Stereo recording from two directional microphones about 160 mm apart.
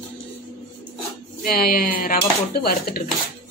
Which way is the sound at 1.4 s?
70° left (ahead or behind).